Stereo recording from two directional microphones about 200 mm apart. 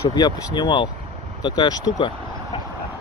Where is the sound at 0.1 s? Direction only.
20° left (ahead or behind).